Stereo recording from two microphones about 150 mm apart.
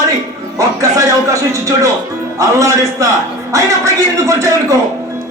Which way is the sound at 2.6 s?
20° right (ahead or behind).